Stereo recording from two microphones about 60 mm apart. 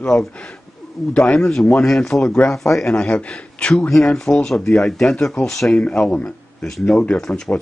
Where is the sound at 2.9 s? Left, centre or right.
Centre.